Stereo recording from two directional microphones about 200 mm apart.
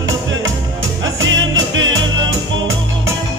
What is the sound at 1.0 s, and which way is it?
Music, 75° right (ahead or behind).